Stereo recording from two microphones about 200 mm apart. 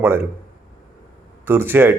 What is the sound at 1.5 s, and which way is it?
Speech, 10° right (ahead or behind).